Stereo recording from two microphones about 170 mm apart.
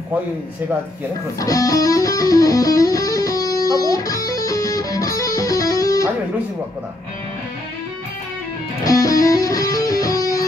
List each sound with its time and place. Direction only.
1.4 s music: 20° left (ahead or behind)
8.8 s music: 20° left (ahead or behind)